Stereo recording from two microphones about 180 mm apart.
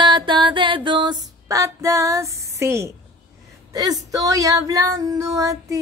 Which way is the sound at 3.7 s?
20° right (ahead or behind).